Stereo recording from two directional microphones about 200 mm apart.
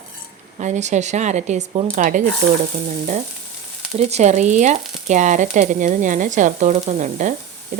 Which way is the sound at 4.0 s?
35° right (ahead or behind).